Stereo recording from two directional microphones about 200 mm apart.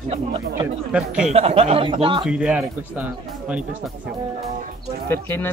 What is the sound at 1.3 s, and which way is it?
Speech, 30° right (ahead or behind).